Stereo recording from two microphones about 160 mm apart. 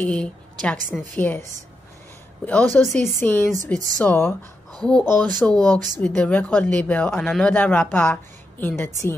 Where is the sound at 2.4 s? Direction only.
5° left (ahead or behind).